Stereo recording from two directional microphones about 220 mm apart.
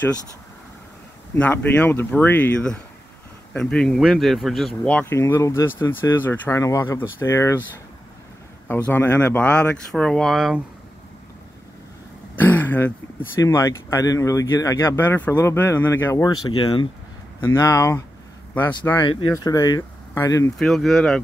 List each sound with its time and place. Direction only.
1.3 s speech: 10° left (ahead or behind)
8.6 s speech: 10° left (ahead or behind)
12.4 s speech: 10° left (ahead or behind)
20.5 s speech: centre (ahead or behind)